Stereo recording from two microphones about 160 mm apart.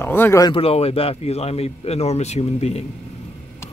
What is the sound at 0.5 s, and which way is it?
Speech, 35° left (ahead or behind).